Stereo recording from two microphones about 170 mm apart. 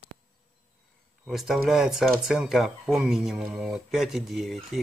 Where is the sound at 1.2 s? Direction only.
Centre (ahead or behind).